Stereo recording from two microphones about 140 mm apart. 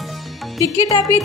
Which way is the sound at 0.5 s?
25° left (ahead or behind).